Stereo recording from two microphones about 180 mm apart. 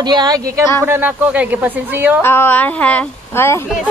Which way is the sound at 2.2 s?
15° left (ahead or behind).